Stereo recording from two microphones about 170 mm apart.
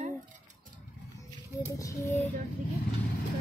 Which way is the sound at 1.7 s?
20° left (ahead or behind).